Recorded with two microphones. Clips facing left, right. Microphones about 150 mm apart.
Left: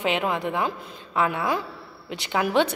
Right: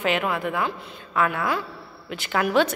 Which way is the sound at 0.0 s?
20° left (ahead or behind).